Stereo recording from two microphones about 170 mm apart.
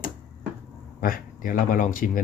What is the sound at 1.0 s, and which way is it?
Speech, 55° left (ahead or behind).